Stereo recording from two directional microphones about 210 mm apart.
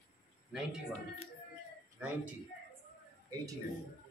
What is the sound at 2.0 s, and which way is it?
Speech, 5° right (ahead or behind).